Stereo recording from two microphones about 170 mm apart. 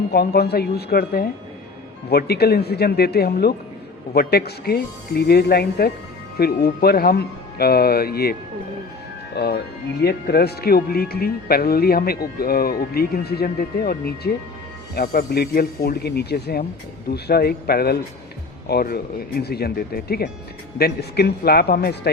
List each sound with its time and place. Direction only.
0.1 s speech: 65° left (ahead or behind)